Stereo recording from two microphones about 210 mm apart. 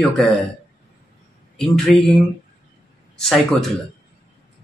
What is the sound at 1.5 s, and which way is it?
Speech, centre (ahead or behind).